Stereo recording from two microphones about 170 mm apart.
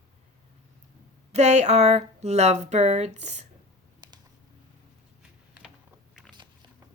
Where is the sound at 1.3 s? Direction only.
40° right (ahead or behind).